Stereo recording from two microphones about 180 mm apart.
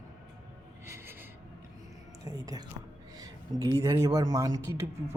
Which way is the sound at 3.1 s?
20° right (ahead or behind).